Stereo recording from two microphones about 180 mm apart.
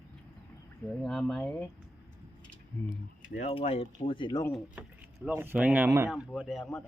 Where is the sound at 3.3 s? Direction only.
35° left (ahead or behind).